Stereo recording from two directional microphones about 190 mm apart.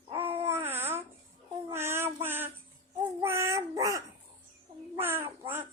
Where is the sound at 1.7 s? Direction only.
15° right (ahead or behind).